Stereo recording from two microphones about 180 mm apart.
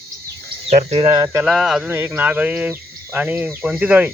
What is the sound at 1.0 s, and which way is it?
Speech, 25° right (ahead or behind).